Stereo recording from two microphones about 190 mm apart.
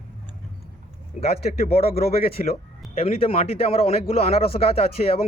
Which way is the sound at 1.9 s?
50° left (ahead or behind).